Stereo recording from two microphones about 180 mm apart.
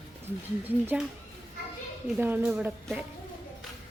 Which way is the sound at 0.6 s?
10° right (ahead or behind).